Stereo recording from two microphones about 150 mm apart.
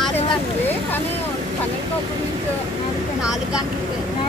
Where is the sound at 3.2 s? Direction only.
5° right (ahead or behind).